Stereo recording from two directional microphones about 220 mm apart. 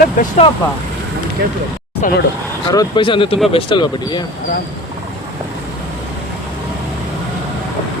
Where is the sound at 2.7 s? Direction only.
20° left (ahead or behind).